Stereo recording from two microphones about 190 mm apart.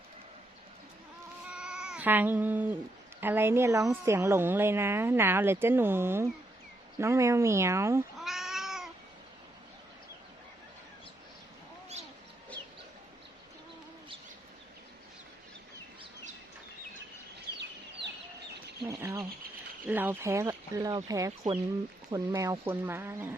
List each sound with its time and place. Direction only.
1.5 s cat: 5° right (ahead or behind)
3.2 s a woman's voice: 10° right (ahead or behind)
8.2 s cat: centre (ahead or behind)
17.6 s chicken: 65° right (ahead or behind)
18.8 s bird: 15° right (ahead or behind)
19.9 s a woman's voice: 10° right (ahead or behind)